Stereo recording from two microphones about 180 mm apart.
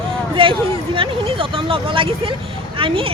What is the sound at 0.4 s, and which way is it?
Speech, 30° right (ahead or behind).